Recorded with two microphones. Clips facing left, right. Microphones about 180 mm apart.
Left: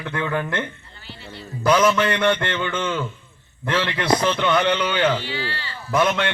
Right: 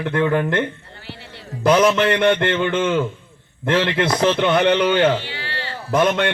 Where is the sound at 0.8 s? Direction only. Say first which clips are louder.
Right 3 dB; 70° right (ahead or behind).